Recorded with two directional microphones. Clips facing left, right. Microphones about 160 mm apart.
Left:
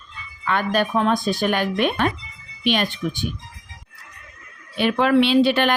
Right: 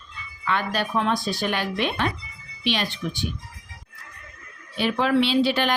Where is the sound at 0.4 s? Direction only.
50° left (ahead or behind).